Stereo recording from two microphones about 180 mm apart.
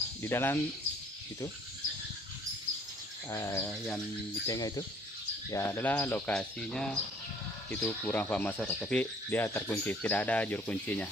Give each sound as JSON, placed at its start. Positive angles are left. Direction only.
{"t": 0.2, "sound": "speech", "side_deg": 15}
{"t": 3.3, "sound": "speech", "side_deg": 15}
{"t": 4.5, "sound": "cricket", "side_deg": 20}
{"t": 5.5, "sound": "speech", "side_deg": 10}